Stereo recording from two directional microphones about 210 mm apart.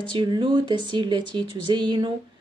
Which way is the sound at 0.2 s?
25° right (ahead or behind).